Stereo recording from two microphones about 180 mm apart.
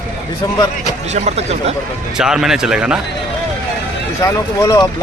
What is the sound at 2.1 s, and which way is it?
Speech, 5° right (ahead or behind).